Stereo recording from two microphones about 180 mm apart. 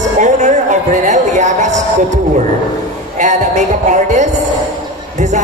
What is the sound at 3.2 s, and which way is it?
Music, 40° right (ahead or behind).